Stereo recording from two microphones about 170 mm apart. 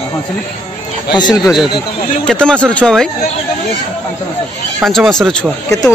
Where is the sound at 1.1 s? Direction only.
25° left (ahead or behind).